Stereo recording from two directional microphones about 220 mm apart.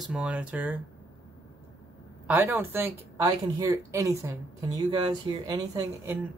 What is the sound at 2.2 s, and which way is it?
Speech, 10° right (ahead or behind).